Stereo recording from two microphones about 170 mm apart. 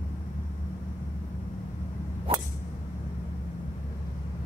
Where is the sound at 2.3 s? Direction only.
35° right (ahead or behind).